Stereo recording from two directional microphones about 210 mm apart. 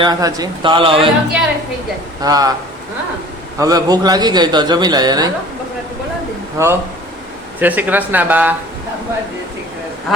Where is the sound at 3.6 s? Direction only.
20° right (ahead or behind).